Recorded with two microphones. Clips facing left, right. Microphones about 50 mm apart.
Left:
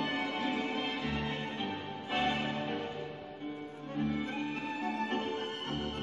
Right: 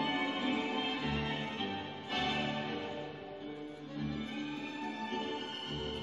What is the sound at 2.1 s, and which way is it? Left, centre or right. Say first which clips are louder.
Music: left 3 dB; left.